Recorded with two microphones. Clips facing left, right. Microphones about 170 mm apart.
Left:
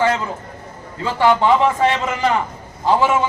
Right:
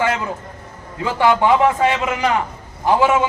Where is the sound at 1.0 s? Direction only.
15° right (ahead or behind).